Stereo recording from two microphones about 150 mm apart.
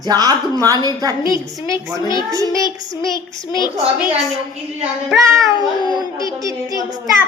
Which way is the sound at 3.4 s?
30° left (ahead or behind).